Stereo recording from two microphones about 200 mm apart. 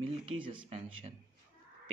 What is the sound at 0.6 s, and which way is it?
Speech, 30° right (ahead or behind).